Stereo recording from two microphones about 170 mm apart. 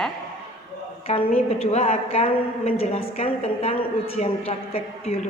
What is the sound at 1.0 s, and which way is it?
A woman's voice, 35° left (ahead or behind).